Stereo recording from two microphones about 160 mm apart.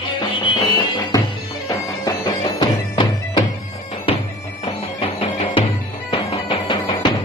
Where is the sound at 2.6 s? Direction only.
30° left (ahead or behind).